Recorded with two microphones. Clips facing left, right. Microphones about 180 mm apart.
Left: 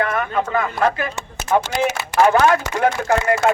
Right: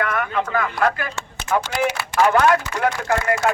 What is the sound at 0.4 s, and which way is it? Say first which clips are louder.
Speech: left 2 dB; 25° left (ahead or behind).